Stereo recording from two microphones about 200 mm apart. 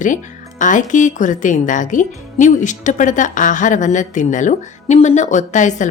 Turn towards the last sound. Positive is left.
turn(degrees=40)  # may be behind; listen again after turning